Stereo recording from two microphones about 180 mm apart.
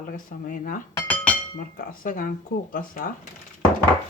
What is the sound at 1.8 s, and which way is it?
Dishes, 50° left (ahead or behind).